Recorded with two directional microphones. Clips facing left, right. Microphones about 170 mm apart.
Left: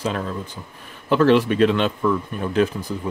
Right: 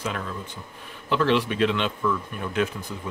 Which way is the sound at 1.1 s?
45° left (ahead or behind).